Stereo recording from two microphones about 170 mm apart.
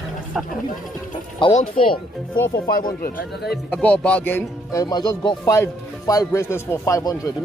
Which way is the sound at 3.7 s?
5° left (ahead or behind).